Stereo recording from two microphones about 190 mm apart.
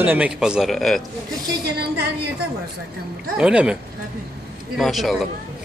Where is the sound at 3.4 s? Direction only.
5° right (ahead or behind).